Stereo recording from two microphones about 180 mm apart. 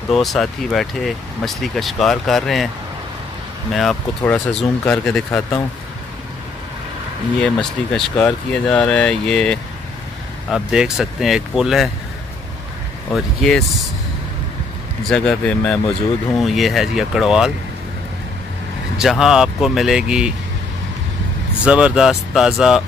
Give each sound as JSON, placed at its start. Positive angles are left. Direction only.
{"t": 0.1, "sound": "speech", "side_deg": 0}
{"t": 3.7, "sound": "speech", "side_deg": 5}
{"t": 7.4, "sound": "speech", "side_deg": 5}
{"t": 13.1, "sound": "speech", "side_deg": 0}
{"t": 15.0, "sound": "speech", "side_deg": 5}
{"t": 18.9, "sound": "speech", "side_deg": 0}
{"t": 21.6, "sound": "speech", "side_deg": -5}